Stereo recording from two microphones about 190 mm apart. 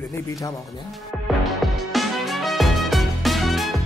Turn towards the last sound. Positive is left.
turn(degrees=0)  # may be behind; listen again after turning